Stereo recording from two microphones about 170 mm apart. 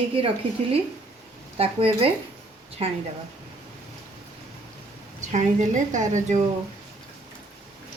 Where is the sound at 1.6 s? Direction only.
35° right (ahead or behind).